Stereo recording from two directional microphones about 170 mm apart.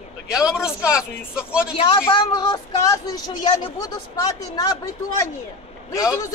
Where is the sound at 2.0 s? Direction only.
25° left (ahead or behind).